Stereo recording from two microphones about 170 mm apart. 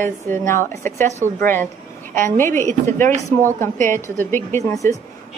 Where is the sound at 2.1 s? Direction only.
15° left (ahead or behind).